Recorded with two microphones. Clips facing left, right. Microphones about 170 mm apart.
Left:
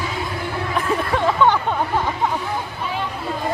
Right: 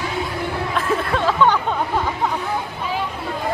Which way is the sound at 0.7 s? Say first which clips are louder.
Left 1 dB; 15° left (ahead or behind).